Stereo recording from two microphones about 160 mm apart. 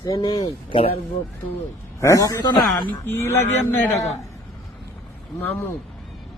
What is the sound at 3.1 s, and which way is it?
Speech, 15° left (ahead or behind).